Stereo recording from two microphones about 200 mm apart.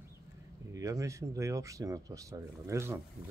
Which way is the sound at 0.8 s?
15° right (ahead or behind).